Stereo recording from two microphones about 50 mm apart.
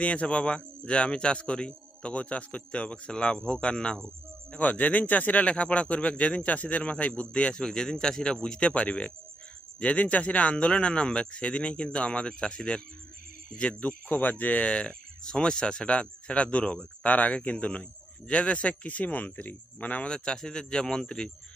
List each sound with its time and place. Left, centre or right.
0.0 s speech: left
4.6 s speech: left
20.1 s speech: centre